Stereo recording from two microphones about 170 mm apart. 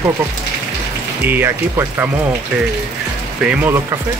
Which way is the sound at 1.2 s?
10° right (ahead or behind).